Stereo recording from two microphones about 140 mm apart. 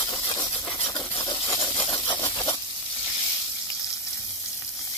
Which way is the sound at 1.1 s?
25° left (ahead or behind).